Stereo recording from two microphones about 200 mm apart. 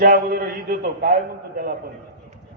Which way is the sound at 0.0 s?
50° right (ahead or behind).